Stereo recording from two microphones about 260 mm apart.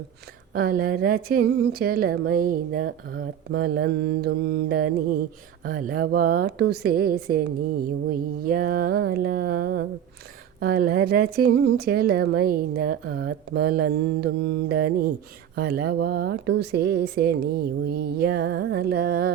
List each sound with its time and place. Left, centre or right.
0.5 s a woman's voice: right